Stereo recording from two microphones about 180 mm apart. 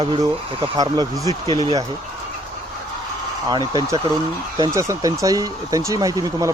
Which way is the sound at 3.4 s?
20° right (ahead or behind).